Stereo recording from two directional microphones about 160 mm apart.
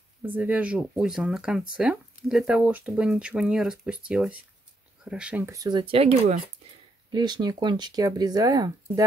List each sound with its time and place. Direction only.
0.2 s speech: 10° right (ahead or behind); by 6.3 s 35° right (ahead or behind)
7.1 s speech: 25° right (ahead or behind)